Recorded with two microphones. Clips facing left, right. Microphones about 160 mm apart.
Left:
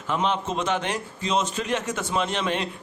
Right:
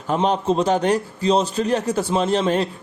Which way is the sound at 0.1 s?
40° right (ahead or behind).